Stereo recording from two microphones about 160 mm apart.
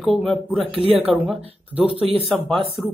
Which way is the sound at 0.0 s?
Centre (ahead or behind).